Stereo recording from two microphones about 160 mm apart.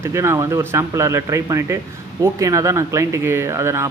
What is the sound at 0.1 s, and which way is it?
Speech, 20° right (ahead or behind).